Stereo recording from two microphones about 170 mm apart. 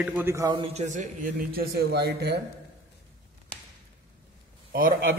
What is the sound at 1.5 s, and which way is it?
Speech, 70° right (ahead or behind).